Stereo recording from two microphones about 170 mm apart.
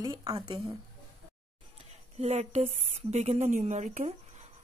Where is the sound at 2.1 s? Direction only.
40° right (ahead or behind).